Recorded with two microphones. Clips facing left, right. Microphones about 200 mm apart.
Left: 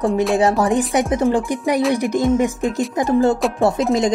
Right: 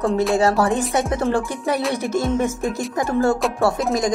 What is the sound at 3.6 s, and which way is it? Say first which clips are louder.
Speech: left 3 dB; 20° left (ahead or behind).